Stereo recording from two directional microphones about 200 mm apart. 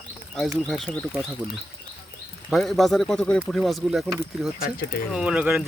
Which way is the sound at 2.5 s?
Centre (ahead or behind).